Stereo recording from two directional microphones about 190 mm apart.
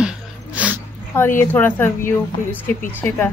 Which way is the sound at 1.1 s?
10° left (ahead or behind).